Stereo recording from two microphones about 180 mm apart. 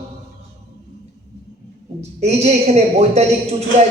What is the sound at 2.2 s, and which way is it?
A man's voice, 40° right (ahead or behind).